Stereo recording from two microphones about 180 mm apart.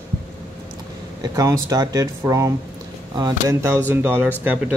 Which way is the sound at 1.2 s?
20° right (ahead or behind).